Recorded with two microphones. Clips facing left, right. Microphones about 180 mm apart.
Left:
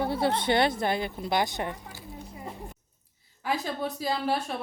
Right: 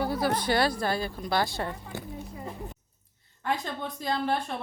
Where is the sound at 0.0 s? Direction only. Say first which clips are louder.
Left 1 dB; 25° left (ahead or behind).